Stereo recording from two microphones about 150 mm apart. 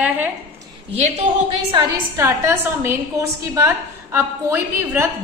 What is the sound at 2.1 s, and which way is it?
A woman's voice, 20° right (ahead or behind).